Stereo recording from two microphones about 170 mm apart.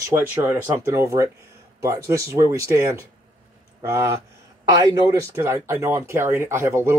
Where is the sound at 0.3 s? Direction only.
10° right (ahead or behind).